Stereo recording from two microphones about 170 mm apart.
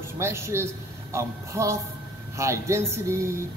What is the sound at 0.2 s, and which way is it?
A man's voice, 15° right (ahead or behind).